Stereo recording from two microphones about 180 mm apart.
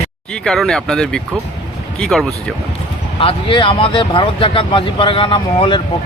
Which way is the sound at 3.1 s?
30° left (ahead or behind).